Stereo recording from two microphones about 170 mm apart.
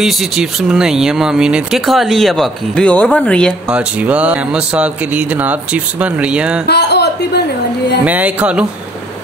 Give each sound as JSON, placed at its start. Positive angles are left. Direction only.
{"t": 0.0, "sound": "speech", "side_deg": -5}
{"t": 3.7, "sound": "speech", "side_deg": -5}
{"t": 6.7, "sound": "a sound", "side_deg": 80}
{"t": 8.0, "sound": "speech", "side_deg": -10}